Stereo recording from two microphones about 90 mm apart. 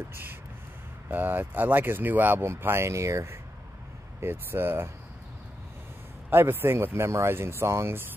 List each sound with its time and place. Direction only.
0.1 s speech: 25° right (ahead or behind)
6.3 s speech: 25° right (ahead or behind)